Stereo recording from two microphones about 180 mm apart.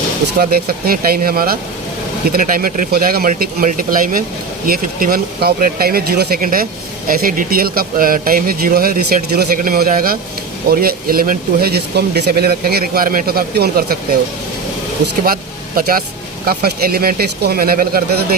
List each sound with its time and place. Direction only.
0.3 s speech: 55° right (ahead or behind)
15.2 s speech: 55° right (ahead or behind)